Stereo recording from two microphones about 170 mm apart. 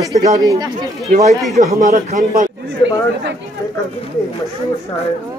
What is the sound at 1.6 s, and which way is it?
Speech, 45° right (ahead or behind).